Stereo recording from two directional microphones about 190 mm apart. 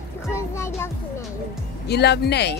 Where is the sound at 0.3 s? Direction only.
15° left (ahead or behind).